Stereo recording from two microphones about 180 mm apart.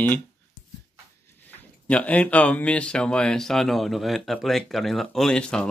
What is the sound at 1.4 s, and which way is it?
Speech, 10° left (ahead or behind).